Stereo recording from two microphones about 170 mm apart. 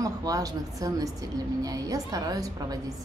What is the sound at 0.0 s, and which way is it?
A woman's voice, 20° right (ahead or behind).